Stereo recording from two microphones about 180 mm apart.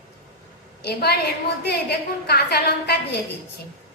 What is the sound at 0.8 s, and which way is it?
A woman's voice, 60° left (ahead or behind).